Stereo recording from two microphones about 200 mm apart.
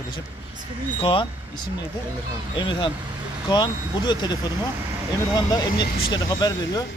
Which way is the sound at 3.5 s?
20° left (ahead or behind).